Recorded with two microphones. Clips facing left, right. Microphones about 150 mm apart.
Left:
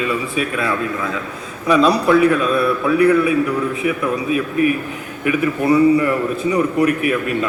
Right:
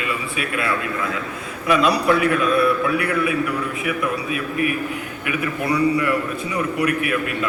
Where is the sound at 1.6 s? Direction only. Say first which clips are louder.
Left 4 dB; 35° left (ahead or behind).